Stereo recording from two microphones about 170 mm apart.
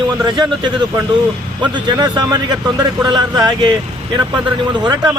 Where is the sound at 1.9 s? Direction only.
25° right (ahead or behind).